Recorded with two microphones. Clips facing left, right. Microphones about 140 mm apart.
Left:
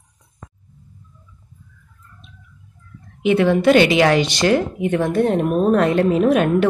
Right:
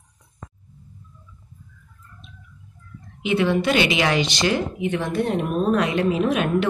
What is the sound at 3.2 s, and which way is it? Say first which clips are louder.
Speech: left 5 dB; 55° left (ahead or behind).